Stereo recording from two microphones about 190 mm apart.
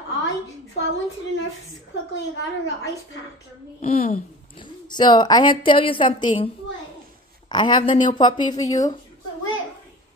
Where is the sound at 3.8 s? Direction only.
35° left (ahead or behind).